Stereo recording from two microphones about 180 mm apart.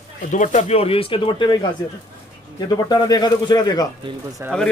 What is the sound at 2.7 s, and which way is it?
Speech, 20° left (ahead or behind).